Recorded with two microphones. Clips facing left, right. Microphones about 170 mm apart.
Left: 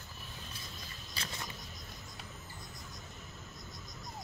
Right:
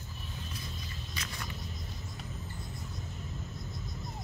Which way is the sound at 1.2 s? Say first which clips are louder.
Even; 30° left (ahead or behind).